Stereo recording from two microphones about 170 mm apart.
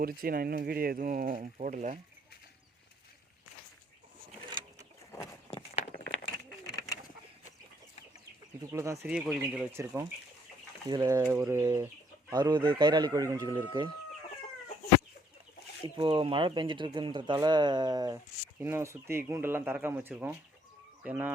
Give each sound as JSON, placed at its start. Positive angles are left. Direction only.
{"t": 0.0, "sound": "speech", "side_deg": -60}
{"t": 4.4, "sound": "a sound", "side_deg": -25}
{"t": 8.7, "sound": "speech", "side_deg": -15}
{"t": 9.0, "sound": "speech", "side_deg": -5}
{"t": 9.7, "sound": "speech", "side_deg": -15}
{"t": 16.0, "sound": "speech", "side_deg": -30}